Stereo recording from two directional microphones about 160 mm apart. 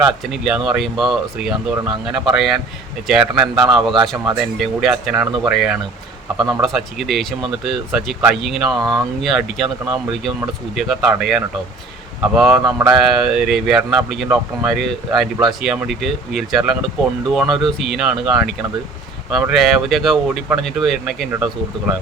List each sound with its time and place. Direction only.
0.0 s speech: centre (ahead or behind)
12.5 s speech: 20° right (ahead or behind)
12.9 s speech: centre (ahead or behind)